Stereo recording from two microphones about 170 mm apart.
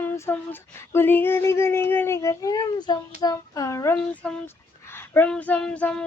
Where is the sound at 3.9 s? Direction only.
5° left (ahead or behind).